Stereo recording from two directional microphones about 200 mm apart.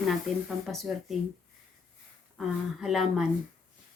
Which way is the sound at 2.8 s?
Centre (ahead or behind).